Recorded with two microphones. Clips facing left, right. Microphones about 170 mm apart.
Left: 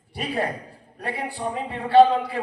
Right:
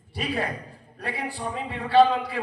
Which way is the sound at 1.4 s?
45° left (ahead or behind).